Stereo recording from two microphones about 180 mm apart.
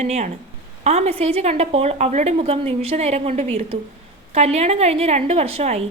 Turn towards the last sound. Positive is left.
turn(degrees=-35)  # may be behind; listen again after turning